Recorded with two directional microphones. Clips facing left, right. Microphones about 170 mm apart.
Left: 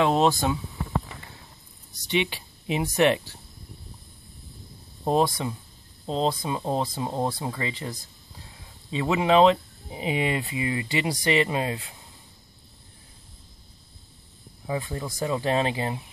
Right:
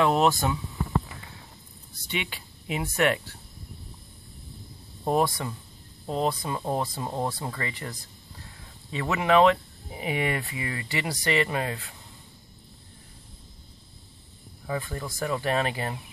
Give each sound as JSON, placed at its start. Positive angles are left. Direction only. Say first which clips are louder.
{"t": 0.0, "sound": "speech", "louder": "left 1 dB", "side_deg": 20}
{"t": 2.0, "sound": "speech", "louder": "left 7 dB", "side_deg": 25}
{"t": 5.0, "sound": "speech", "louder": "left 2 dB", "side_deg": 20}
{"t": 14.7, "sound": "speech", "louder": "left 2 dB", "side_deg": 20}